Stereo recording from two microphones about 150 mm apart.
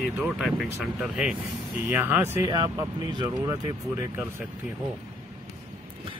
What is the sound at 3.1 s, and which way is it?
Speech, 30° right (ahead or behind).